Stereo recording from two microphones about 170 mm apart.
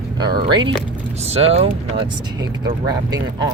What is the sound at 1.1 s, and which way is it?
Vehicle, 35° right (ahead or behind).